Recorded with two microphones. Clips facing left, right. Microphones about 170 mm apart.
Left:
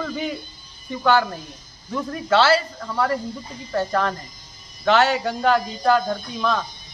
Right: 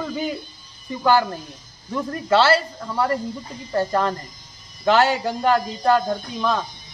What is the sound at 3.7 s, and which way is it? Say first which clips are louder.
Speech: right 1 dB; 10° right (ahead or behind).